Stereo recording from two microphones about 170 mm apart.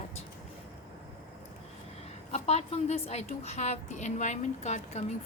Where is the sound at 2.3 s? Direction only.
40° left (ahead or behind).